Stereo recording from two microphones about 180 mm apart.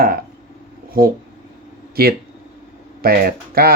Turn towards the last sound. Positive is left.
turn(degrees=-55)  # may be behind; listen again after turning